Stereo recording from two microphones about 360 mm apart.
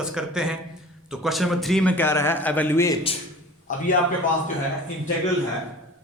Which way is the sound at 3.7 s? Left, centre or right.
Left.